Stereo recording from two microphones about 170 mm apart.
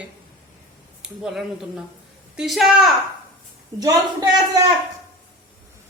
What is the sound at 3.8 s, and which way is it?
Speech, 20° right (ahead or behind).